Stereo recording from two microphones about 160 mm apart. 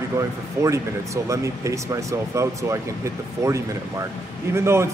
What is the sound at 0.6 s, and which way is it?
A man's voice, 20° right (ahead or behind).